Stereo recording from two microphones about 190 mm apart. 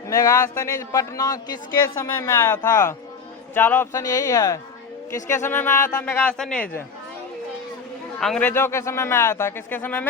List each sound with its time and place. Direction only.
0.1 s speech: 15° left (ahead or behind)
8.2 s speech: 5° left (ahead or behind)